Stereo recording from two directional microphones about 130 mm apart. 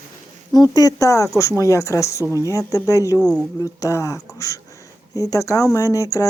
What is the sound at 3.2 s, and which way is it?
Speech, 5° left (ahead or behind).